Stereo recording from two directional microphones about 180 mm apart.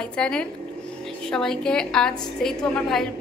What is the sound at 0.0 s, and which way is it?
A woman's voice, 5° left (ahead or behind).